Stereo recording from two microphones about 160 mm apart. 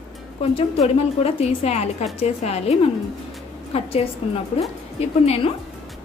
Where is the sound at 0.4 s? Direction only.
40° left (ahead or behind).